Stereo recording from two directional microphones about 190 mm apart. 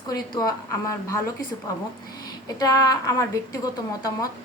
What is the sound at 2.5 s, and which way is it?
A woman's voice, 20° left (ahead or behind).